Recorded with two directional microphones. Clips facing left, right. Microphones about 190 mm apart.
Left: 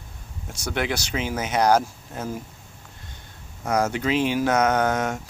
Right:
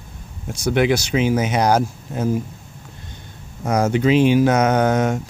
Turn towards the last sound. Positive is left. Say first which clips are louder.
# right 5 dB
turn(degrees=-20)  # may be behind; listen again after turning